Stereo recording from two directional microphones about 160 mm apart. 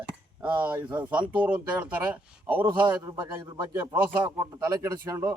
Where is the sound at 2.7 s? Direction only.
30° right (ahead or behind).